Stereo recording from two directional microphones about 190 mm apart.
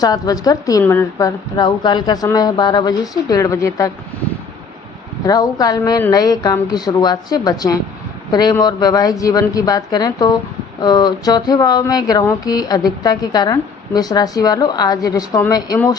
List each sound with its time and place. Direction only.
0.0 s speech: 20° left (ahead or behind)
1.5 s speech: 25° left (ahead or behind)
5.2 s a man's voice: 20° left (ahead or behind)